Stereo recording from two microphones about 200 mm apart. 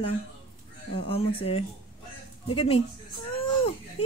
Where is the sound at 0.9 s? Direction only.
30° left (ahead or behind).